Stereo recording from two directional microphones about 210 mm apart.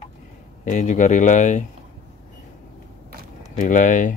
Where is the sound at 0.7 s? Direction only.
35° left (ahead or behind).